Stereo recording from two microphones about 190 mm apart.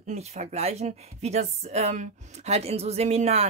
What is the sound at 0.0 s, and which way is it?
Speech, 35° right (ahead or behind).